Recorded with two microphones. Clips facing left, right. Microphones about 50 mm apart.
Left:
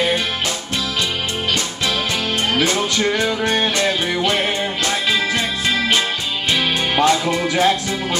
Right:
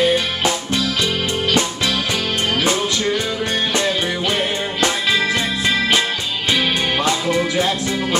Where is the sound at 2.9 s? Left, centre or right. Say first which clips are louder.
Left 1 dB; centre.